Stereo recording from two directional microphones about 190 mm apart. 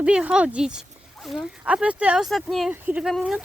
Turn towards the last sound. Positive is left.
turn(degrees=0)  # may be behind; listen again after turning